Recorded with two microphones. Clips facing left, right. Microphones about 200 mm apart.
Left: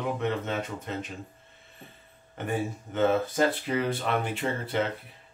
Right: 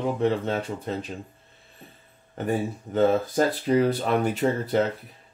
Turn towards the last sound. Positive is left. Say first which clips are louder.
# right 6 dB
turn(degrees=-40)  # may be behind; listen again after turning